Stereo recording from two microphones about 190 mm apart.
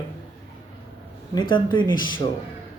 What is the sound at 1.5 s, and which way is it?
Speech, 25° left (ahead or behind).